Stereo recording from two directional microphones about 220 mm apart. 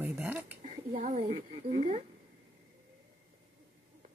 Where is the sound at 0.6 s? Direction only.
35° right (ahead or behind).